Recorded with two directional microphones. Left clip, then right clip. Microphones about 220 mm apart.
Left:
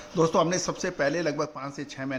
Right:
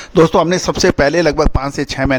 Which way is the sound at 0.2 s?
45° right (ahead or behind).